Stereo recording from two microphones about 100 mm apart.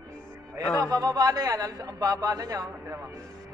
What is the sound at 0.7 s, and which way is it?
A man's voice, 35° right (ahead or behind).